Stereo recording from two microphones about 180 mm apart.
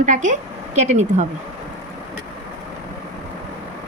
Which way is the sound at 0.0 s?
45° right (ahead or behind).